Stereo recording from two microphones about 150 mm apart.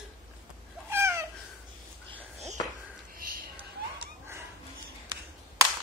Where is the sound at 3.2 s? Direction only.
75° right (ahead or behind).